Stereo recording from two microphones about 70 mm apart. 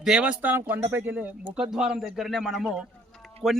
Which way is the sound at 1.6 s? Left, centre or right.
Centre.